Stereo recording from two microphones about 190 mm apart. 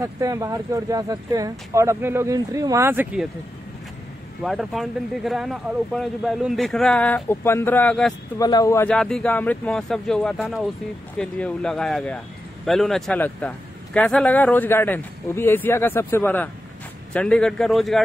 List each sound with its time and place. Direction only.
0.0 s speech: 15° right (ahead or behind)
4.4 s speech: centre (ahead or behind)
8.4 s a man's voice: 20° left (ahead or behind); by 18.0 s centre (ahead or behind)